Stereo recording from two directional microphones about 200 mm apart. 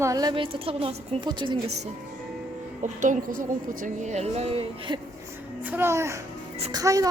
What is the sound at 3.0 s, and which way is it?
Speech, 40° right (ahead or behind).